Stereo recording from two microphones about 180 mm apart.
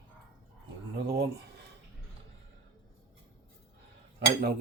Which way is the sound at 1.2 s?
65° right (ahead or behind).